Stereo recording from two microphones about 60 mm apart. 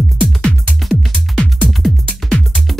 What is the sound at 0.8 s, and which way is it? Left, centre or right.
Music, centre.